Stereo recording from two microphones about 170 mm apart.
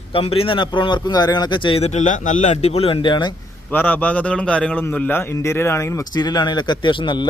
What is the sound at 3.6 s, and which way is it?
A man's voice, 10° left (ahead or behind).